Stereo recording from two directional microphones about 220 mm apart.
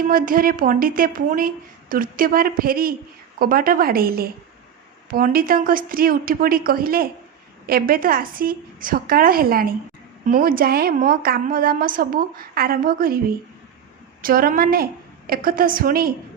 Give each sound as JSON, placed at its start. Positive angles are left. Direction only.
{"t": 0.1, "sound": "a woman's voice", "side_deg": -40}
{"t": 14.2, "sound": "a woman's voice", "side_deg": -40}